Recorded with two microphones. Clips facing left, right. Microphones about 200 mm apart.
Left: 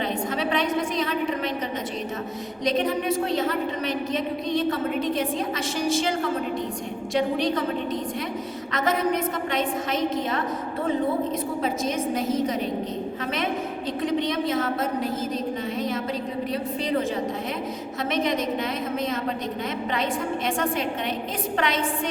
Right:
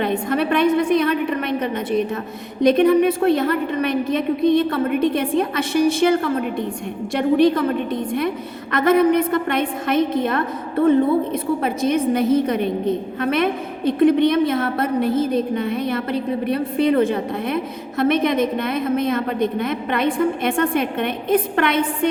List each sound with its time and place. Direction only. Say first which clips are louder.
0.0 s a woman's voice: right 6 dB; 60° right (ahead or behind)
11.6 s a woman's voice: right 7 dB; 60° right (ahead or behind)